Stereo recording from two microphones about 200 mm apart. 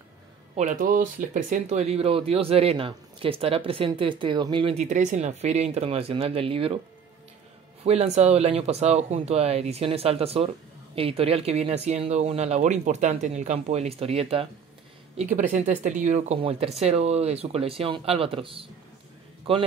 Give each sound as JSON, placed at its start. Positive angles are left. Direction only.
{"t": 0.6, "sound": "speech", "side_deg": -40}
{"t": 7.8, "sound": "speech", "side_deg": -35}
{"t": 15.1, "sound": "speech", "side_deg": -40}